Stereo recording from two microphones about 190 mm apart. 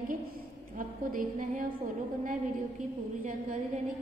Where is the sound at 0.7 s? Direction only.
45° right (ahead or behind).